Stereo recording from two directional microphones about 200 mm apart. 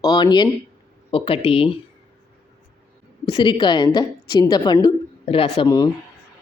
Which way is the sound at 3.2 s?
20° left (ahead or behind).